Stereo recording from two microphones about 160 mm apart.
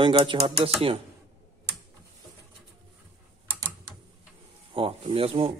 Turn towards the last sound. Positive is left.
turn(degrees=-35)  # may be behind; listen again after turning